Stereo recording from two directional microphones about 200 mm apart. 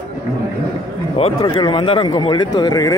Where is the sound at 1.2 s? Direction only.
25° left (ahead or behind).